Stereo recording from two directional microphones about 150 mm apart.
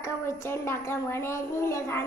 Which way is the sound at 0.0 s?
15° left (ahead or behind).